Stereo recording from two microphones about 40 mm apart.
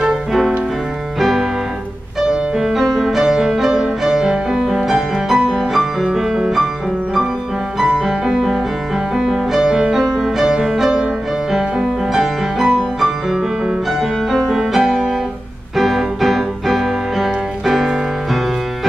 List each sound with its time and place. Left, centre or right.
2.2 s music: centre
2.8 s music: centre
3.1 s music: centre
6.1 s music: centre
7.8 s music: centre
9.9 s music: centre
10.4 s music: centre
14.5 s music: centre